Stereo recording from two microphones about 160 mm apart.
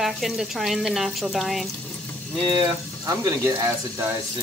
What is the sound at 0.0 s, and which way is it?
A woman's voice, centre (ahead or behind).